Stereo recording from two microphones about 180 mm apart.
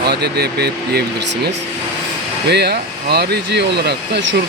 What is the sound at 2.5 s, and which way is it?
Speech, 65° right (ahead or behind).